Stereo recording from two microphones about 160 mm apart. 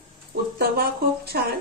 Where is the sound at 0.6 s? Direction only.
75° right (ahead or behind).